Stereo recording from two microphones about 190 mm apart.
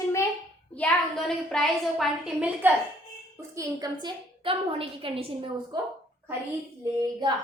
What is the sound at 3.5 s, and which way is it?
A woman's voice, 20° right (ahead or behind).